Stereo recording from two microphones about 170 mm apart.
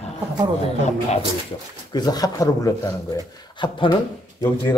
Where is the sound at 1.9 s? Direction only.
25° left (ahead or behind).